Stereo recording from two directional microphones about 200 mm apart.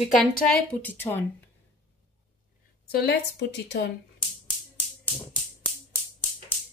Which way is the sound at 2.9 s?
50° left (ahead or behind).